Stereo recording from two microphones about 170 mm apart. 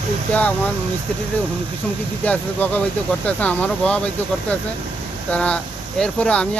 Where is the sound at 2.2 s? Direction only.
10° left (ahead or behind).